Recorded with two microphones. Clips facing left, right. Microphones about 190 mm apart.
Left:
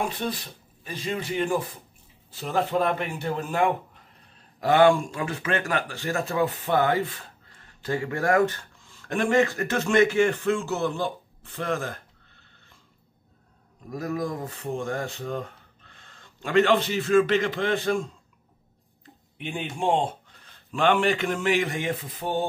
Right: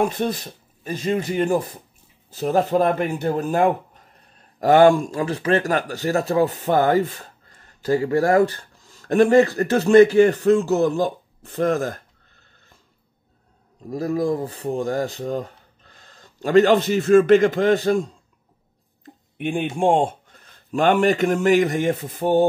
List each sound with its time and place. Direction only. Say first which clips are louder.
0.0 s speech: right 7 dB; 45° right (ahead or behind)
13.8 s speech: right 7 dB; 30° right (ahead or behind)
19.3 s speech: right 9 dB; 55° right (ahead or behind)